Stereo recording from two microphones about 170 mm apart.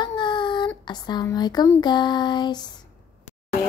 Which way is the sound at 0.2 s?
30° left (ahead or behind).